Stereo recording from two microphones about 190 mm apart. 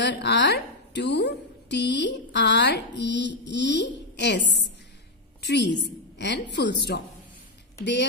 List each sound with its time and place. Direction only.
0.0 s a woman's voice: 65° left (ahead or behind)